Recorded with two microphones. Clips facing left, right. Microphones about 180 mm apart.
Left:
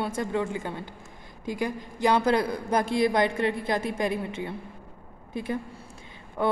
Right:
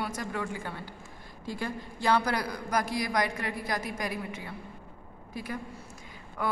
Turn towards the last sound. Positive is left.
turn(degrees=25)  # may be behind; listen again after turning